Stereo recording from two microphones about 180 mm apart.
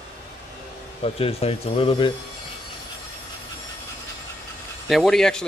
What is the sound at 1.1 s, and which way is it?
Speech, 35° left (ahead or behind).